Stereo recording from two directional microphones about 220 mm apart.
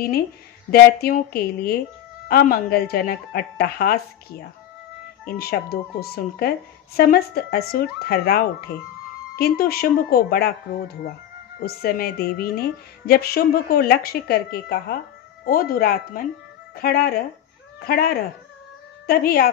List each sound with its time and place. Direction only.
0.7 s a woman's voice: 45° left (ahead or behind)
5.2 s a woman's voice: 45° left (ahead or behind)
19.0 s a woman's voice: 45° left (ahead or behind)